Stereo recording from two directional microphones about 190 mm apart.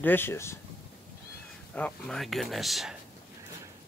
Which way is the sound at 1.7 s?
5° left (ahead or behind).